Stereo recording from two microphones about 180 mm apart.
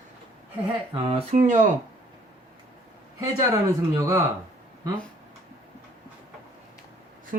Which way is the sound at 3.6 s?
15° right (ahead or behind).